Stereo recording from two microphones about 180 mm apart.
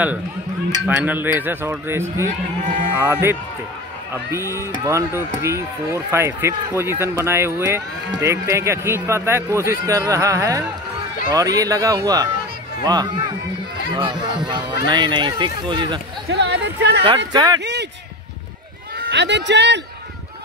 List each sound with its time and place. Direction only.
0.8 s speech: 10° right (ahead or behind); by 16.0 s 25° right (ahead or behind)
16.3 s speech: 75° right (ahead or behind)
17.3 s speech: 25° right (ahead or behind)
18.9 s a man's voice: 80° right